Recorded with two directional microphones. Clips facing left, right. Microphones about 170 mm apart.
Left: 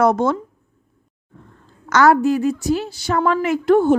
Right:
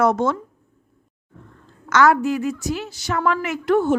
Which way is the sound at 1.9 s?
35° left (ahead or behind).